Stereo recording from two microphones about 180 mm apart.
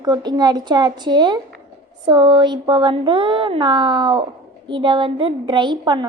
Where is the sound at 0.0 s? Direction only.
25° right (ahead or behind).